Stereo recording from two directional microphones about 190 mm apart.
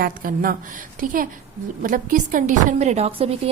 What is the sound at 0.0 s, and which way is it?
A woman's voice, 50° right (ahead or behind).